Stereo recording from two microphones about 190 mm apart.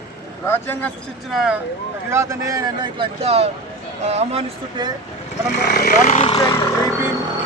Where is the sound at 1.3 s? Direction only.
5° right (ahead or behind).